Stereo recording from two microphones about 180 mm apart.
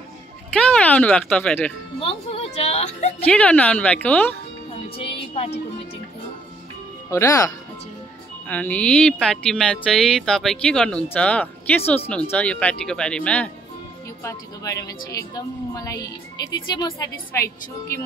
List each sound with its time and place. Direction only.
0.5 s speech: 5° left (ahead or behind)
2.0 s music: 30° left (ahead or behind)
3.3 s speech: 5° left (ahead or behind)
4.8 s music: 30° left (ahead or behind)
7.1 s speech: 15° left (ahead or behind)
8.5 s speech: 10° left (ahead or behind)
14.2 s speech: 20° left (ahead or behind)